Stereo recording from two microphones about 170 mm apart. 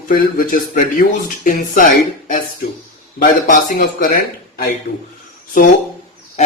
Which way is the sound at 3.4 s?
50° left (ahead or behind).